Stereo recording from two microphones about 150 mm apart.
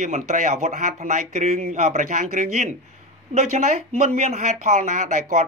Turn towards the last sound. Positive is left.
turn(degrees=-50)  # may be behind; listen again after turning